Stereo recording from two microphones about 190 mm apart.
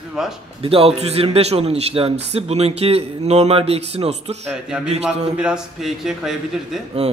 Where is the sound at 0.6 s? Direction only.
30° right (ahead or behind).